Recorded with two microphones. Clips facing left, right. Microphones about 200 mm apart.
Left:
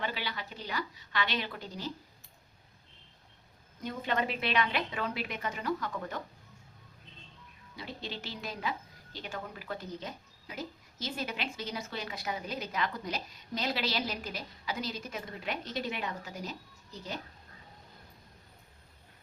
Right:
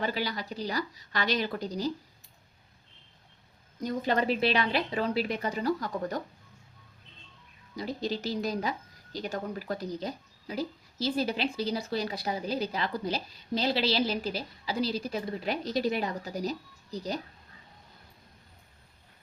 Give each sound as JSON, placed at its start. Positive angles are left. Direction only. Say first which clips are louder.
{"t": 0.0, "sound": "speech", "louder": "right 6 dB", "side_deg": -40}
{"t": 3.8, "sound": "speech", "louder": "right 5 dB", "side_deg": -40}
{"t": 7.8, "sound": "speech", "louder": "right 9 dB", "side_deg": -40}